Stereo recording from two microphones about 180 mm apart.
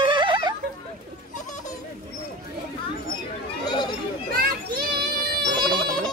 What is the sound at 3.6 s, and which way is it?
Chatter, 25° left (ahead or behind).